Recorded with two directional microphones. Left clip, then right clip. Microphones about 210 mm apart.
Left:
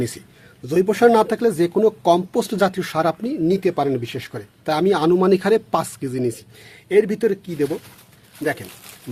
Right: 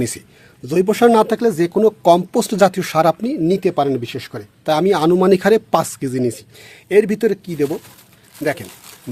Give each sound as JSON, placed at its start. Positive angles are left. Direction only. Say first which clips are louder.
{"t": 0.6, "sound": "speech", "louder": "right 2 dB", "side_deg": -30}
{"t": 8.6, "sound": "speech", "louder": "right 2 dB", "side_deg": 0}